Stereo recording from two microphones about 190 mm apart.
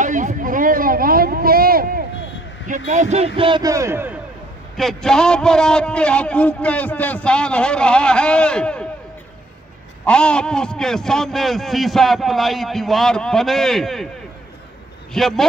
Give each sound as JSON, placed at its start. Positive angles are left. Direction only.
{"t": 0.0, "sound": "a sound", "side_deg": -40}
{"t": 2.9, "sound": "speech", "side_deg": -40}
{"t": 3.3, "sound": "a man's voice", "side_deg": -25}
{"t": 4.7, "sound": "a man's voice", "side_deg": 0}
{"t": 10.0, "sound": "a man's voice", "side_deg": 5}
{"t": 15.1, "sound": "a man's voice", "side_deg": 0}